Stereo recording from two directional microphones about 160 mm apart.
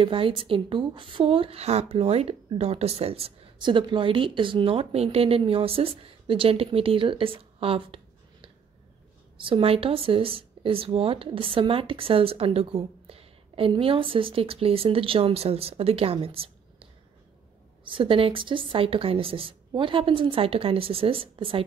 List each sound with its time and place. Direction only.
0.0 s speech: 35° right (ahead or behind)